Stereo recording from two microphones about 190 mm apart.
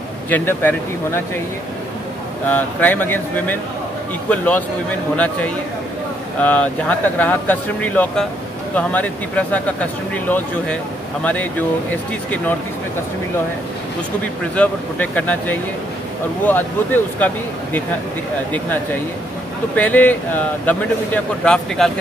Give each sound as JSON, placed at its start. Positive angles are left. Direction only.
{"t": 0.3, "sound": "speech", "side_deg": 10}
{"t": 2.4, "sound": "speech", "side_deg": 10}
{"t": 14.5, "sound": "speech", "side_deg": 5}
{"t": 19.7, "sound": "speech", "side_deg": 10}